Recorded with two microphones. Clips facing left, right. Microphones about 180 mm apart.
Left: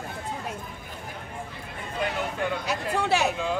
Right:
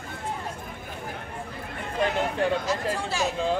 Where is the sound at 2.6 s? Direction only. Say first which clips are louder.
Even; 65° left (ahead or behind).